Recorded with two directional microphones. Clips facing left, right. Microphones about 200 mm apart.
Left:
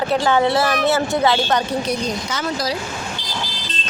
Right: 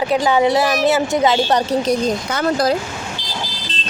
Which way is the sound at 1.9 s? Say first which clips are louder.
Right 5 dB; 50° right (ahead or behind).